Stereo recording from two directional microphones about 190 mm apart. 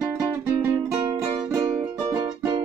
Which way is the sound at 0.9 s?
15° right (ahead or behind).